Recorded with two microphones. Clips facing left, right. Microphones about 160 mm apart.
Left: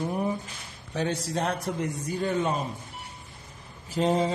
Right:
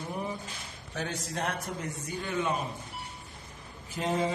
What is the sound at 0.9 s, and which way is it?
A man's voice, 30° left (ahead or behind).